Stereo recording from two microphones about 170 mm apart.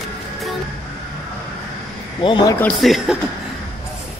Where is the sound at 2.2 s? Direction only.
30° left (ahead or behind).